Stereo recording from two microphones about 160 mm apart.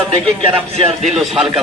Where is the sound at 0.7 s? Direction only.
40° right (ahead or behind).